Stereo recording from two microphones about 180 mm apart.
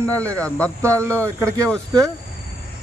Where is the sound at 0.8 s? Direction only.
15° right (ahead or behind).